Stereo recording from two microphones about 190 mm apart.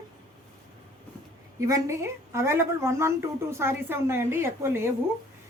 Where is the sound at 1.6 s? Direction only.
15° right (ahead or behind).